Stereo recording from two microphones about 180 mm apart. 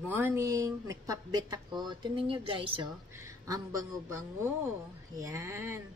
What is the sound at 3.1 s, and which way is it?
Speech, 20° right (ahead or behind).